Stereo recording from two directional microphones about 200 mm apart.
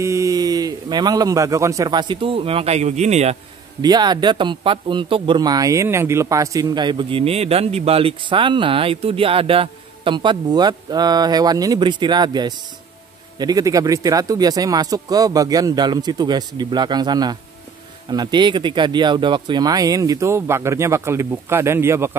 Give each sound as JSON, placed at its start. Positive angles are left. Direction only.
{"t": 0.0, "sound": "a man's voice", "side_deg": -15}
{"t": 3.8, "sound": "a man's voice", "side_deg": -20}